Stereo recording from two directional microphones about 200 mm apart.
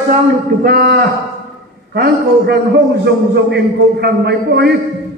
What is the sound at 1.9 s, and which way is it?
A man's voice, 50° right (ahead or behind).